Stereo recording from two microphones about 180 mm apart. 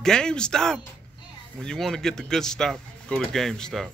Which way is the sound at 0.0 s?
5° left (ahead or behind).